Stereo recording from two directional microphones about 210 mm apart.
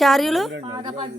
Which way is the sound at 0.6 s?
20° right (ahead or behind).